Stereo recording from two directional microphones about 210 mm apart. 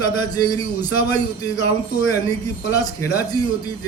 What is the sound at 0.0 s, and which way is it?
Speech, 20° left (ahead or behind).